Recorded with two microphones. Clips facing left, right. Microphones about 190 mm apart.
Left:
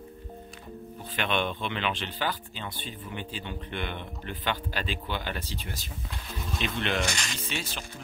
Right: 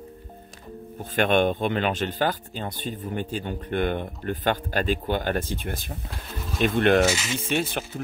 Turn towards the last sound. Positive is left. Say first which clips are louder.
# right 10 dB
turn(degrees=-55)  # may be behind; listen again after turning